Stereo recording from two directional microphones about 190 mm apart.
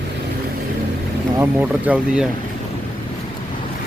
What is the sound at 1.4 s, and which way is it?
Speech, 10° right (ahead or behind).